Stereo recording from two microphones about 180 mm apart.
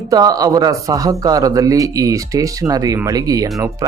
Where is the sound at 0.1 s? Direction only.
20° right (ahead or behind).